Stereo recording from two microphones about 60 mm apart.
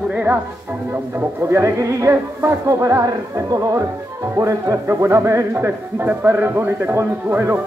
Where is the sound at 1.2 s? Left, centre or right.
Right.